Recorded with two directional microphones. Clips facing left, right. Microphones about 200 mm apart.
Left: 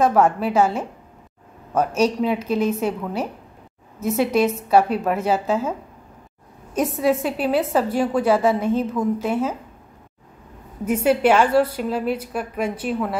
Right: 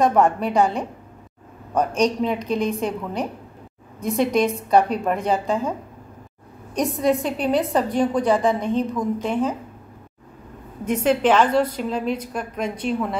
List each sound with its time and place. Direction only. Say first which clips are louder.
0.0 s a woman's voice: left 1 dB; 5° left (ahead or behind)
2.0 s a woman's voice: left 1 dB; 5° left (ahead or behind)
10.9 s a woman's voice: left 1 dB; 10° left (ahead or behind)